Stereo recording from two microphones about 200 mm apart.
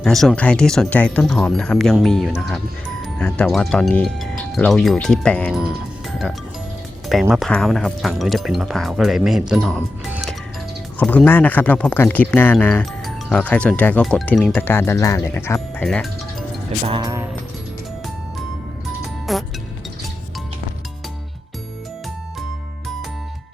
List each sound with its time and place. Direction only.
0.0 s speech: centre (ahead or behind)
5.5 s music: centre (ahead or behind)
7.1 s speech: centre (ahead or behind)
10.1 s music: centre (ahead or behind)
10.9 s speech: 5° left (ahead or behind)
16.8 s music: 25° right (ahead or behind)
19.3 s music: centre (ahead or behind)